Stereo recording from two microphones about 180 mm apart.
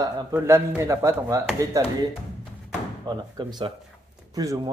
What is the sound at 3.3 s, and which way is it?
Speech, 25° right (ahead or behind).